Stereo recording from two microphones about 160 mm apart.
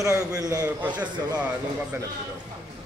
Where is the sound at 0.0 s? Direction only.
20° right (ahead or behind).